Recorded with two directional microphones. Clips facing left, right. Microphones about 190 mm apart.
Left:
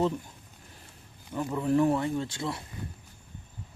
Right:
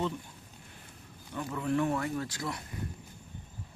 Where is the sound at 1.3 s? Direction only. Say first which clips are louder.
Left 5 dB; 25° left (ahead or behind).